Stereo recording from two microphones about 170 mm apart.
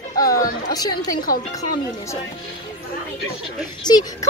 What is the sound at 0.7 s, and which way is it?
Speech, 20° left (ahead or behind).